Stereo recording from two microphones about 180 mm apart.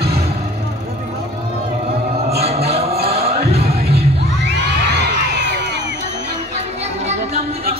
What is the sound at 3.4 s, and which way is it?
Music, 35° right (ahead or behind).